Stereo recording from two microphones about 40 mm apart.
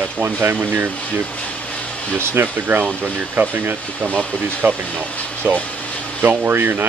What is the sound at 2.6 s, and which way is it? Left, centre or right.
Speech, right.